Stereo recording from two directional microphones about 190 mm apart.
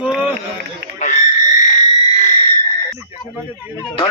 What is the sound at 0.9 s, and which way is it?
Frog, 40° left (ahead or behind).